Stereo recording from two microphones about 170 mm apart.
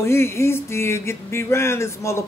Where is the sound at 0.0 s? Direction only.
15° left (ahead or behind).